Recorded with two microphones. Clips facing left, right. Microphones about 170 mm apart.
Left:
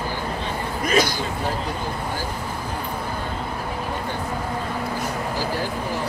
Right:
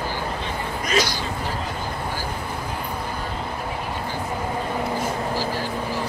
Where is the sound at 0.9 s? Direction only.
55° left (ahead or behind).